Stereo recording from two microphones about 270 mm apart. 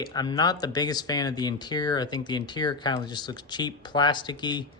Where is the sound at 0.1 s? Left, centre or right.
Centre.